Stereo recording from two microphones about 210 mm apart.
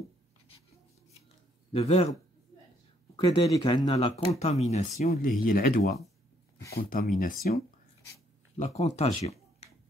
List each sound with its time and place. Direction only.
1.7 s speech: 30° left (ahead or behind)
3.2 s speech: 20° left (ahead or behind)
9.2 s a sound: 30° left (ahead or behind)